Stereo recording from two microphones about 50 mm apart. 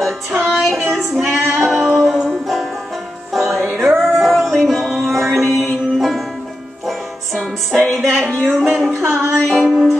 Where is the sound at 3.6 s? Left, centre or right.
Right.